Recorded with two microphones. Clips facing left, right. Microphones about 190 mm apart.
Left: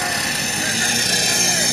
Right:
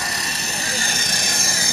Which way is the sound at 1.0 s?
75° left (ahead or behind).